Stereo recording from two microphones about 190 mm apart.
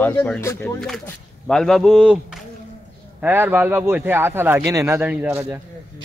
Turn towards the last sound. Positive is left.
turn(degrees=-5)  # may be behind; listen again after turning